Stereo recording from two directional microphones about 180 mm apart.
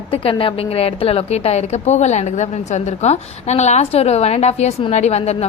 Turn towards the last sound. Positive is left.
turn(degrees=35)  # may be behind; listen again after turning